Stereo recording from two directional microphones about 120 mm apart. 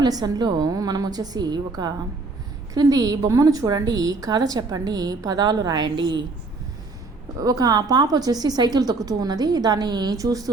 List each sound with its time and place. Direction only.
0.0 s a woman's voice: 35° right (ahead or behind)
7.3 s a woman's voice: 30° right (ahead or behind)